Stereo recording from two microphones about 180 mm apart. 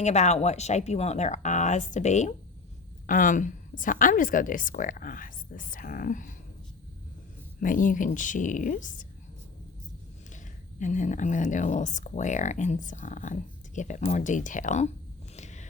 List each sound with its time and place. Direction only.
0.0 s speech: 40° left (ahead or behind)
7.6 s speech: 50° left (ahead or behind)
10.3 s speech: 45° left (ahead or behind)
15.4 s a sound: 40° left (ahead or behind)